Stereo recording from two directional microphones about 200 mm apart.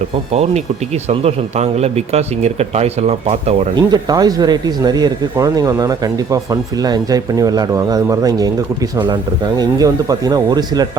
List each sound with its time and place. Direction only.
1.2 s speech: 30° right (ahead or behind)
3.8 s speech: 20° right (ahead or behind)
9.6 s speech: 20° right (ahead or behind)